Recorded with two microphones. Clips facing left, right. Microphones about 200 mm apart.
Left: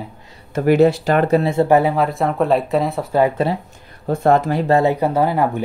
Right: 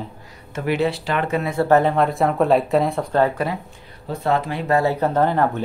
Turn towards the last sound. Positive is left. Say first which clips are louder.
# left 1 dB
turn(degrees=10)  # may be behind; listen again after turning